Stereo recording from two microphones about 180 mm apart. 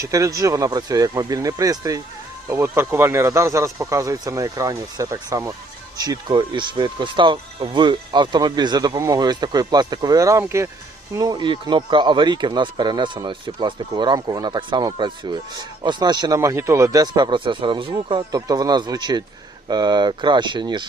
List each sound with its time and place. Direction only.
0.0 s speech: 20° right (ahead or behind)